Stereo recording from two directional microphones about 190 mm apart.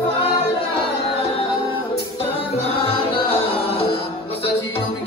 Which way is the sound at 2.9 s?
30° left (ahead or behind).